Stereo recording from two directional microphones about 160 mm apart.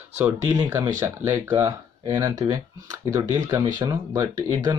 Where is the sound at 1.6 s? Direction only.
25° right (ahead or behind).